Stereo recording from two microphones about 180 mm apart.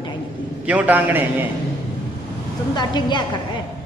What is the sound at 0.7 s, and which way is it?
Speech, 10° right (ahead or behind).